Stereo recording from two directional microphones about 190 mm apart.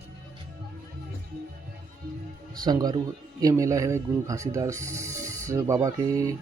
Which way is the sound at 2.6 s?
20° right (ahead or behind).